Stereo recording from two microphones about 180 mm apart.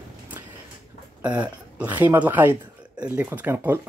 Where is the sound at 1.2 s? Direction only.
5° right (ahead or behind).